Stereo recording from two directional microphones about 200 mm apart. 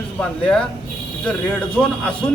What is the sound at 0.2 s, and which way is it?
Speech, 5° left (ahead or behind).